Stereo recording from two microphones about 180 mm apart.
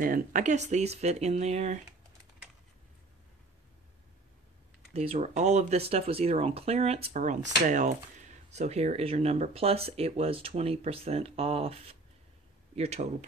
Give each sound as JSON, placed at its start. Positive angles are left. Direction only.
{"t": 0.0, "sound": "speech", "side_deg": -50}
{"t": 4.9, "sound": "speech", "side_deg": -35}